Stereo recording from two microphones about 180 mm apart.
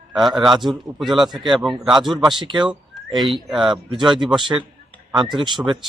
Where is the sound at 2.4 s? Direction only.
25° right (ahead or behind).